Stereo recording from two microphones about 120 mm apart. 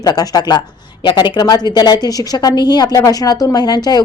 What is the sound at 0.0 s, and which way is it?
A woman's voice, 35° left (ahead or behind).